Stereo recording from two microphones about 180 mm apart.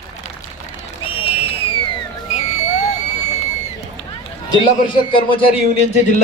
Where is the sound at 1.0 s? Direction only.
30° left (ahead or behind).